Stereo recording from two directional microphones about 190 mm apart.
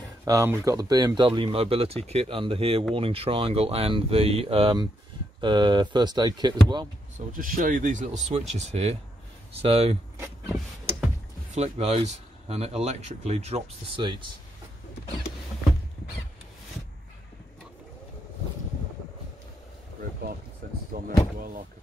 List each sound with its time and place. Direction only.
0.2 s speech: 15° right (ahead or behind)
7.2 s speech: 45° right (ahead or behind)
11.5 s speech: 35° right (ahead or behind)
20.9 s speech: 45° right (ahead or behind)